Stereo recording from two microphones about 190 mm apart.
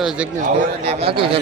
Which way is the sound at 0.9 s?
30° right (ahead or behind).